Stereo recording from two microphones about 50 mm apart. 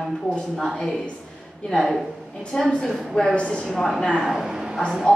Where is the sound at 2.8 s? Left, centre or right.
Centre.